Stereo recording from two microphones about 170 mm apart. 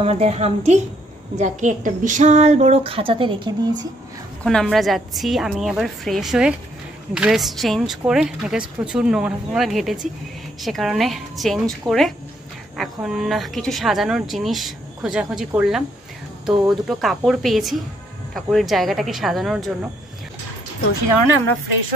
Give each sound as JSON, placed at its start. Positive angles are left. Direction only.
{"t": 0.0, "sound": "speech", "side_deg": -35}
{"t": 4.4, "sound": "speech", "side_deg": 5}